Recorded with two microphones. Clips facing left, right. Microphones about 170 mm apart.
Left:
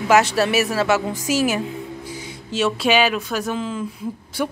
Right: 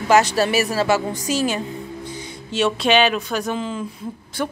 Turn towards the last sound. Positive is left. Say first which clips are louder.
# left 1 dB
turn(degrees=10)  # may be behind; listen again after turning